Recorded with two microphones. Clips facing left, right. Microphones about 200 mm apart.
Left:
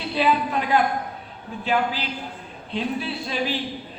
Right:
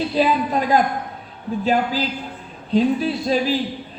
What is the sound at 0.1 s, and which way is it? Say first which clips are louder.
Speech: left 1 dB; 40° right (ahead or behind).